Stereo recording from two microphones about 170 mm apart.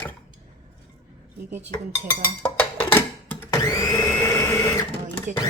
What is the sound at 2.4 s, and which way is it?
Blender, 10° left (ahead or behind).